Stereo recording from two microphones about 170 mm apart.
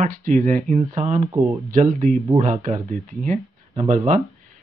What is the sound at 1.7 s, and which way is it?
Speech, 50° right (ahead or behind).